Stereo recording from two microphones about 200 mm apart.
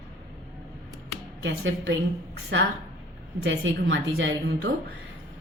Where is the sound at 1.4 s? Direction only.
70° right (ahead or behind).